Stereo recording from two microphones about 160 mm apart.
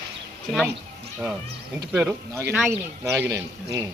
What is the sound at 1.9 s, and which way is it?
Speech, 10° right (ahead or behind).